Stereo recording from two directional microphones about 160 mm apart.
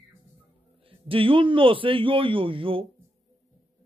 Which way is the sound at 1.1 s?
35° right (ahead or behind).